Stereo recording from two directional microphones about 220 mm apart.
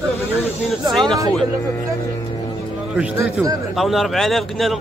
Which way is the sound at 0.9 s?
Centre (ahead or behind).